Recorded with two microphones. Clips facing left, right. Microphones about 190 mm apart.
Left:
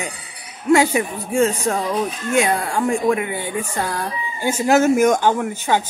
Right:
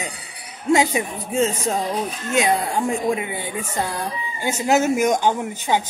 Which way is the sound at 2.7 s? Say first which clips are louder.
Left 3 dB; 20° right (ahead or behind).